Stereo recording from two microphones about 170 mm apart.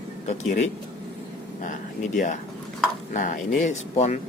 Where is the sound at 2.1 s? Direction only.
45° left (ahead or behind).